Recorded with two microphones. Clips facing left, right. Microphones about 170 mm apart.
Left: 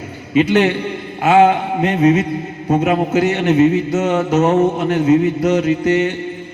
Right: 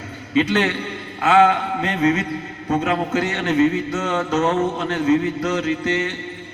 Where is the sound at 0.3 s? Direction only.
10° left (ahead or behind).